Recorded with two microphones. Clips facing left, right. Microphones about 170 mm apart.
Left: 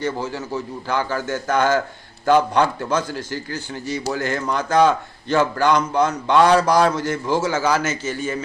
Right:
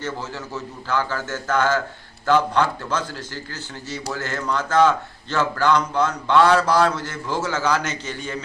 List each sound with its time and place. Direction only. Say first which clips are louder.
0.0 s a man's voice: left 5 dB; 15° left (ahead or behind)